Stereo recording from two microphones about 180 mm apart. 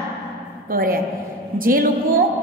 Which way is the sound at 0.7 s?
50° right (ahead or behind).